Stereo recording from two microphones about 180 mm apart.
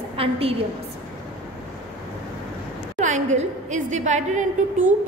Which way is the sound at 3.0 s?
40° right (ahead or behind).